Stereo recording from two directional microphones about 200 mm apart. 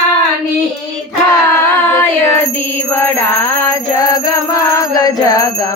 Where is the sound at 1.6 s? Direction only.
10° left (ahead or behind).